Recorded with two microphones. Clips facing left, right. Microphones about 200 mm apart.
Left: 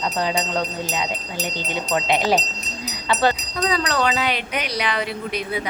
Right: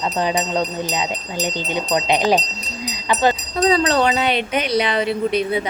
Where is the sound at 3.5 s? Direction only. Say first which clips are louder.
Right 6 dB; 30° right (ahead or behind).